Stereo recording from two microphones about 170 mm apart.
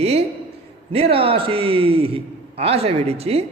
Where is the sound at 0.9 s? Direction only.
35° right (ahead or behind).